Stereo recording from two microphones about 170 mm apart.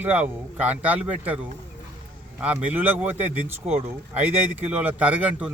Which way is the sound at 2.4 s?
10° right (ahead or behind).